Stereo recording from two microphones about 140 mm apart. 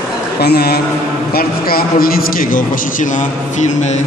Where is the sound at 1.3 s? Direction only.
90° left; by 3.9 s 60° left (ahead or behind).